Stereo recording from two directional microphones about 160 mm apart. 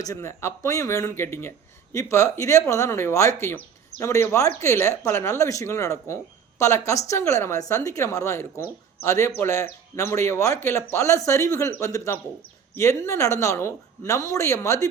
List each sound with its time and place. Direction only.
0.0 s speech: 20° left (ahead or behind)